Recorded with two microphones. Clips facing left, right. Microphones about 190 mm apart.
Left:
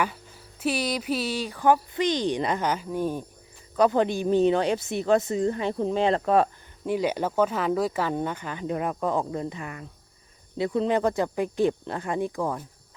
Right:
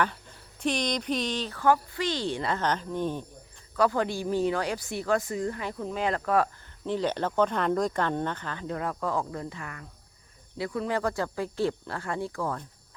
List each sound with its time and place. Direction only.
0.0 s speech: 5° left (ahead or behind)
3.8 s speech: 20° left (ahead or behind)
6.8 s speech: 10° left (ahead or behind)